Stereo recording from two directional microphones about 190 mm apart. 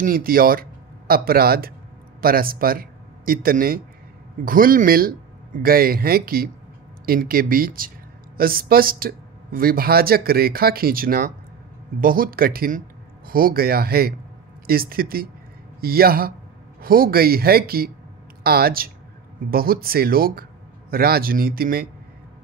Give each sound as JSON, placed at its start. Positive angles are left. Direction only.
{"t": 0.0, "sound": "a man's voice", "side_deg": -50}